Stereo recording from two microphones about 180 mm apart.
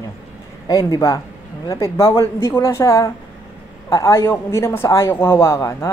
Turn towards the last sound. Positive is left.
turn(degrees=15)  # may be behind; listen again after turning